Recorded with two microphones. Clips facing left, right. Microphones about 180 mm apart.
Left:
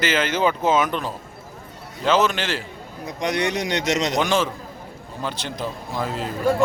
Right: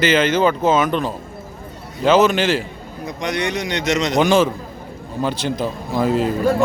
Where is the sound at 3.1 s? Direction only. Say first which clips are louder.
Even; 40° left (ahead or behind).